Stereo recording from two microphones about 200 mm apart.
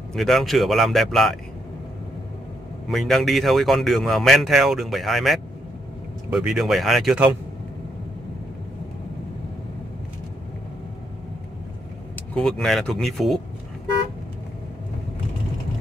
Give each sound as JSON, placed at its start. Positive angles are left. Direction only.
{"t": 0.1, "sound": "speech", "side_deg": 0}
{"t": 2.9, "sound": "speech", "side_deg": 0}
{"t": 12.4, "sound": "speech", "side_deg": 0}